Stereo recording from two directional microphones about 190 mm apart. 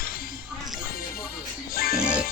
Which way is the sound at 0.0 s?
50° left (ahead or behind).